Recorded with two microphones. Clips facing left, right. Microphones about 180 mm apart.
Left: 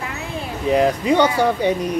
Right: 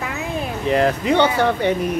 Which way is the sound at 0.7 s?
10° left (ahead or behind).